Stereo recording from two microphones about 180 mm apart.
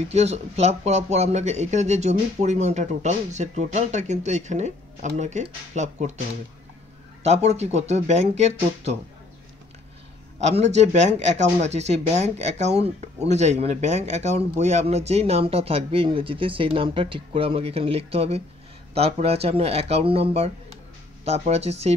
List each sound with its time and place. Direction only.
0.1 s speech: 35° right (ahead or behind)
7.2 s speech: 35° right (ahead or behind)
10.4 s speech: 40° right (ahead or behind)